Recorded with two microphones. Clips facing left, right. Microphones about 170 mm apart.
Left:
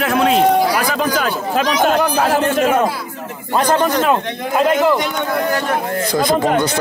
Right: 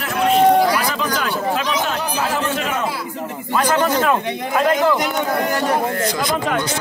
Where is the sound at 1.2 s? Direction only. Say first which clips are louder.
Left 3 dB; 45° left (ahead or behind).